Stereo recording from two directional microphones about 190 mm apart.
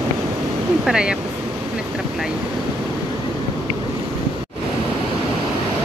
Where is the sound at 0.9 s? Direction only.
5° right (ahead or behind).